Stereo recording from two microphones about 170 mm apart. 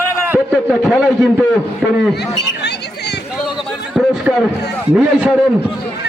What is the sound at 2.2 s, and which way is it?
Speech, 80° left.